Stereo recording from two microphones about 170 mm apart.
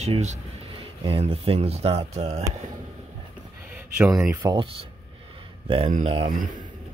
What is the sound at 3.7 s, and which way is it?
Speech, 10° right (ahead or behind).